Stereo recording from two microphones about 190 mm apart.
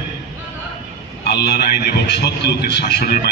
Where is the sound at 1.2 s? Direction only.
60° left (ahead or behind).